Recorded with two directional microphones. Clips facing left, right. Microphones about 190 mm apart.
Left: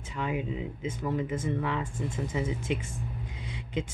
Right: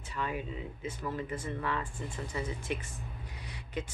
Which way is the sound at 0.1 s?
15° left (ahead or behind).